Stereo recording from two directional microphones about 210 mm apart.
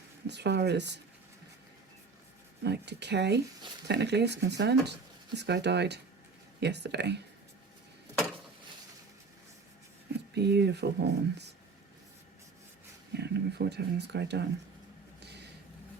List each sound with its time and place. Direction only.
0.3 s speech: 55° right (ahead or behind)
2.6 s speech: 55° right (ahead or behind)
10.3 s speech: 50° right (ahead or behind)
13.1 s speech: 50° right (ahead or behind)
15.2 s a sound: 55° right (ahead or behind)